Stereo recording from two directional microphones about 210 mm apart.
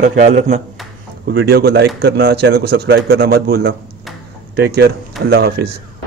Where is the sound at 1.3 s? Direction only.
50° right (ahead or behind).